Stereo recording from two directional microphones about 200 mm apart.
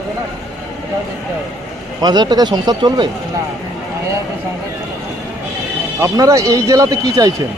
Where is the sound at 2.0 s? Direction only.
20° right (ahead or behind).